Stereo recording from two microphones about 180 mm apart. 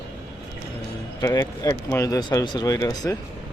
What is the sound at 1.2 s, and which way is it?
Speech, 20° left (ahead or behind).